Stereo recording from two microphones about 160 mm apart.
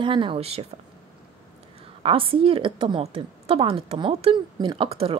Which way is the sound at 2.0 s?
35° right (ahead or behind).